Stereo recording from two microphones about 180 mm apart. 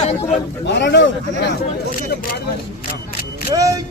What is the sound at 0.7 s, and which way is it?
Speech, 80° left.